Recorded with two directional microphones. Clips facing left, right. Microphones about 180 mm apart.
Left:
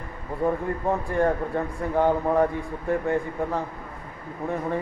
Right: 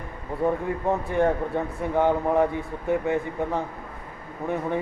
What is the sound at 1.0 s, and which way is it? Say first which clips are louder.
A man's voice: right 1 dB; centre (ahead or behind).